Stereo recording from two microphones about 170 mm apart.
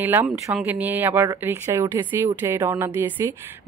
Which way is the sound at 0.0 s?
15° right (ahead or behind).